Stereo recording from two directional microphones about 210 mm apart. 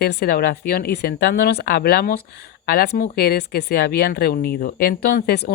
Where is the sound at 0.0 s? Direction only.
50° left (ahead or behind).